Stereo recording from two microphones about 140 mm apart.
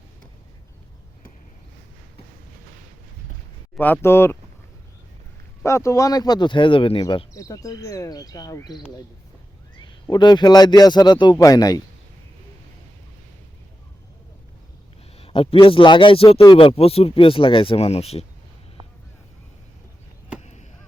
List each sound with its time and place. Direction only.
3.8 s speech: 15° left (ahead or behind)
5.6 s a man's voice: 20° left (ahead or behind); by 7.0 s 40° left (ahead or behind)
7.3 s a man's voice: 25° left (ahead or behind)
15.2 s speech: 40° left (ahead or behind)
20.4 s chop: 55° left (ahead or behind)